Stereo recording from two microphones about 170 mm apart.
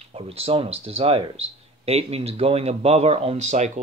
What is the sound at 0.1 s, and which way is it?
Speech, 35° right (ahead or behind).